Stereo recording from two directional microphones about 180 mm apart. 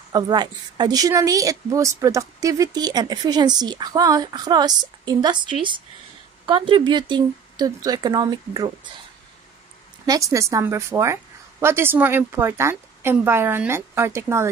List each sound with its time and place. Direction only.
0.1 s a woman's voice: 25° right (ahead or behind)
10.0 s a woman's voice: 20° right (ahead or behind)